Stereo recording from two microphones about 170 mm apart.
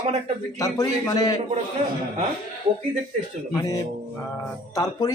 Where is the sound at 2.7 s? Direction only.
35° right (ahead or behind).